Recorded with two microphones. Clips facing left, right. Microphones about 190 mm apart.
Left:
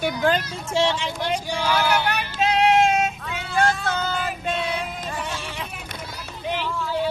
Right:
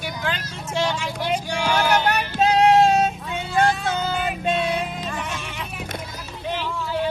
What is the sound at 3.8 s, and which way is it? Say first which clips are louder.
Child singing: right 2 dB; 15° right (ahead or behind).